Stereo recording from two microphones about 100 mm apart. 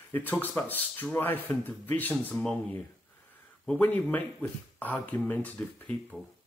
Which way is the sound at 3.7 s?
15° left (ahead or behind).